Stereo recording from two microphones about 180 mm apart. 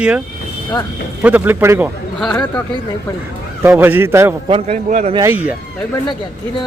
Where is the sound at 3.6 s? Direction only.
10° right (ahead or behind).